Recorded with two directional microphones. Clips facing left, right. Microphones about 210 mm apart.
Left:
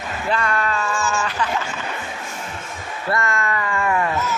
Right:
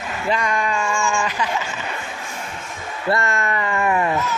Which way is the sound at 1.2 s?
10° right (ahead or behind).